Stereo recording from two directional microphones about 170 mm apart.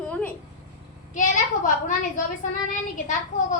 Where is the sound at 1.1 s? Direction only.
50° left (ahead or behind).